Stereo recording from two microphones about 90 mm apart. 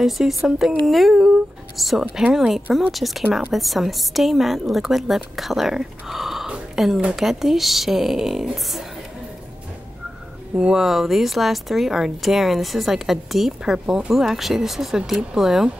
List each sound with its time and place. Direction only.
0.0 s a woman's voice: centre (ahead or behind)
10.5 s a woman's voice: 10° right (ahead or behind)